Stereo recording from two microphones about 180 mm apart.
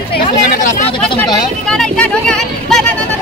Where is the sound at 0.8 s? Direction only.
30° left (ahead or behind).